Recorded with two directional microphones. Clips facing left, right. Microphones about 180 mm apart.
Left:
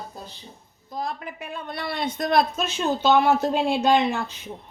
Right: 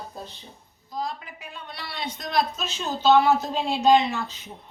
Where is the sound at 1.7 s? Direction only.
50° left (ahead or behind).